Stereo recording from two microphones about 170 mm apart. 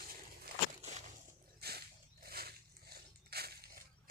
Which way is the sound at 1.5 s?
65° right (ahead or behind).